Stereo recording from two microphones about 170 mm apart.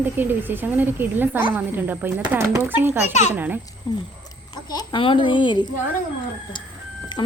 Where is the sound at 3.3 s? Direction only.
10° right (ahead or behind).